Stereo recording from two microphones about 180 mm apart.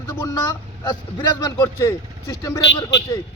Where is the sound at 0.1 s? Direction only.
25° left (ahead or behind).